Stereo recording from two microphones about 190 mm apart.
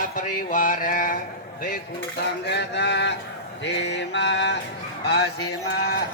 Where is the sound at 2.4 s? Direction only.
65° left (ahead or behind).